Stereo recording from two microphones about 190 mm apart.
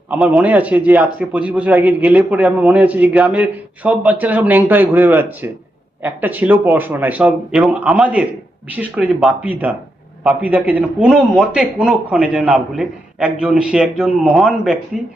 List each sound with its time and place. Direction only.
0.1 s a man's voice: 5° right (ahead or behind)